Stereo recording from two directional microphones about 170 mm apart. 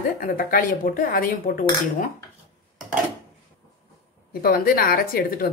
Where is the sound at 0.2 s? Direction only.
55° left (ahead or behind).